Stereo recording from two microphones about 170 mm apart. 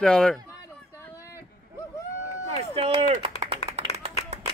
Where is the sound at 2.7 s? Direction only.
35° right (ahead or behind).